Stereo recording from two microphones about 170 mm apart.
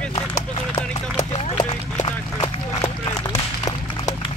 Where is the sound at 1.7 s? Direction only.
25° left (ahead or behind).